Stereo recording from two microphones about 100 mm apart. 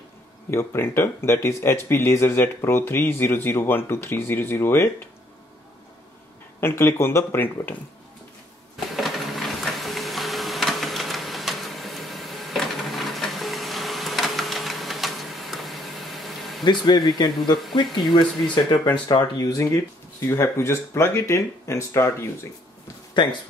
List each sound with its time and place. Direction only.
0.5 s speech: 25° left (ahead or behind)
6.6 s speech: 25° left (ahead or behind)
8.7 s printer: centre (ahead or behind)
16.6 s speech: 50° left (ahead or behind)
19.4 s speech: 30° left (ahead or behind)
23.2 s speech: 50° left (ahead or behind)